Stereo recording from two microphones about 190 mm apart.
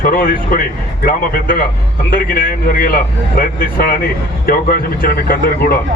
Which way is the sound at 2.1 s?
50° left (ahead or behind).